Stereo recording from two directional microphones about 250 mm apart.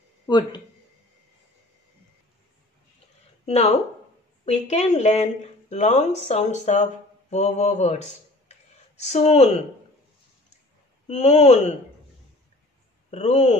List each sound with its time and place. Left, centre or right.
0.3 s speech: centre
3.4 s speech: left
11.1 s speech: left
13.1 s speech: left